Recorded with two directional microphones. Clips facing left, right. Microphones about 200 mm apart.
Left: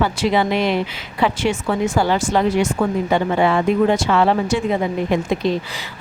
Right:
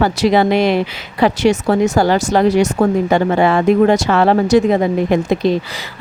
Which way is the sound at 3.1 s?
70° right (ahead or behind).